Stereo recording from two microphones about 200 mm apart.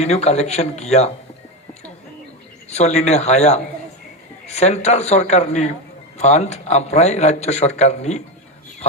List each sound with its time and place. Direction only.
0.0 s a man's voice: 30° left (ahead or behind)
2.7 s a man's voice: 35° left (ahead or behind)